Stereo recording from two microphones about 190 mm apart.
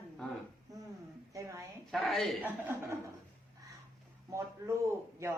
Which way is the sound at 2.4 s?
10° right (ahead or behind).